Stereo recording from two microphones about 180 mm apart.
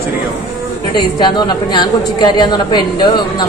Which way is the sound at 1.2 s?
25° left (ahead or behind).